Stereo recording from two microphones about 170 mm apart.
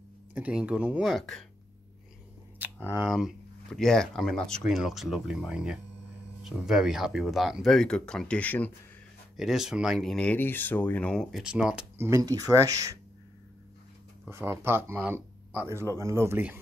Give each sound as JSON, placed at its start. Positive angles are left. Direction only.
{"t": 0.3, "sound": "speech", "side_deg": -10}
{"t": 2.9, "sound": "speech", "side_deg": -5}
{"t": 9.4, "sound": "speech", "side_deg": 0}
{"t": 12.1, "sound": "speech", "side_deg": -20}
{"t": 14.3, "sound": "speech", "side_deg": -15}